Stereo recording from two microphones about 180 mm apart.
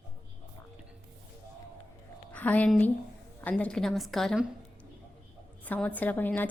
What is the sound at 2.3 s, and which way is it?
A woman's voice, 10° left (ahead or behind).